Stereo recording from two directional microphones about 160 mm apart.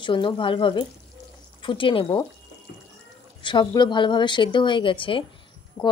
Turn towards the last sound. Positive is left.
turn(degrees=25)  # may be behind; listen again after turning